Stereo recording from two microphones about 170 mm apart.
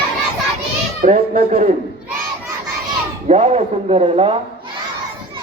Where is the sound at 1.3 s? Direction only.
35° right (ahead or behind).